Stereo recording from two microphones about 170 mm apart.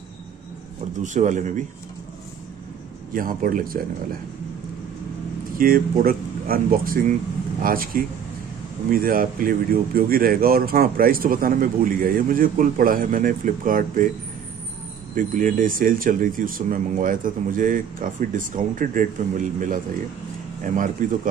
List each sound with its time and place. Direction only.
1.0 s speech: 45° right (ahead or behind)
3.1 s speech: 55° right (ahead or behind)
5.6 s speech: 60° right (ahead or behind)
15.1 s speech: 50° right (ahead or behind)